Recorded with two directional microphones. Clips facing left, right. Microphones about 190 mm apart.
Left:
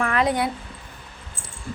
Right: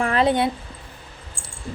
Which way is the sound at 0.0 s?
30° right (ahead or behind).